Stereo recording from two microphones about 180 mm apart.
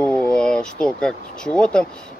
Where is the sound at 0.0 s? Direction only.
5° left (ahead or behind).